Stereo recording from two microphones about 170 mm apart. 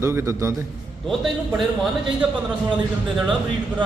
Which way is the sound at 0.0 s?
15° right (ahead or behind).